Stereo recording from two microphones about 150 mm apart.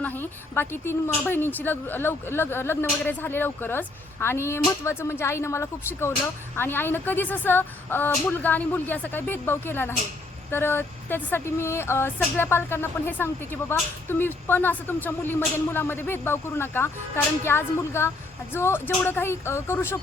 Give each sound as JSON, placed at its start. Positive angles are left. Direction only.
{"t": 0.0, "sound": "a woman's voice", "side_deg": 10}